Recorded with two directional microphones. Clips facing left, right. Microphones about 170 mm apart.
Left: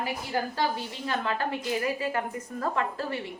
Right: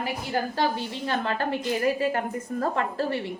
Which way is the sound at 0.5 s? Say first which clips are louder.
Right 3 dB; 25° right (ahead or behind).